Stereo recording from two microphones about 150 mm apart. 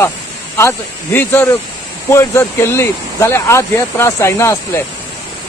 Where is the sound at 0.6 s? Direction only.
15° left (ahead or behind).